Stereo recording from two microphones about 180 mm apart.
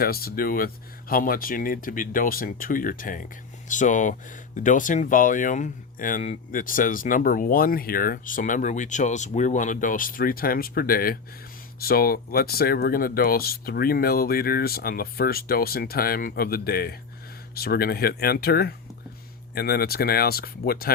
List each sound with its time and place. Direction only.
0.0 s speech: 55° left (ahead or behind)